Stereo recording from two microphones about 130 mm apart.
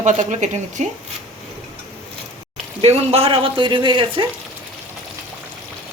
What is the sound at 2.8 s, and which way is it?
Speech, 50° right (ahead or behind).